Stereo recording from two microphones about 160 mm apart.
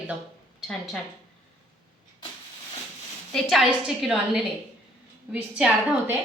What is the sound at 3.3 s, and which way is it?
A woman's voice, centre (ahead or behind).